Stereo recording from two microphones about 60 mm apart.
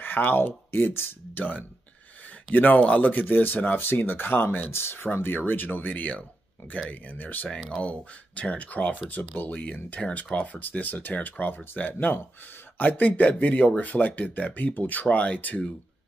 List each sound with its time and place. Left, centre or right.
0.0 s speech: left